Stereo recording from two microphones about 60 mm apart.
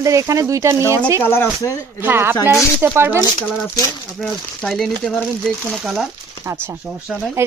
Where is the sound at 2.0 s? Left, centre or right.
Right.